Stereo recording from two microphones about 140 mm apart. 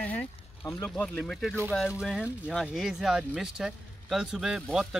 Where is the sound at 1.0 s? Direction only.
10° left (ahead or behind).